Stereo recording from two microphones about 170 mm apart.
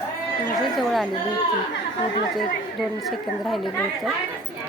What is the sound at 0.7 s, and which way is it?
Speech, centre (ahead or behind).